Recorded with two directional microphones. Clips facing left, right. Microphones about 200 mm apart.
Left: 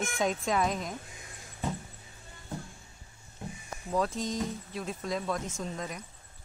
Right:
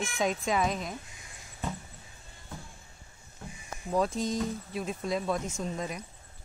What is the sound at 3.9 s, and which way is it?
Speech, 10° right (ahead or behind).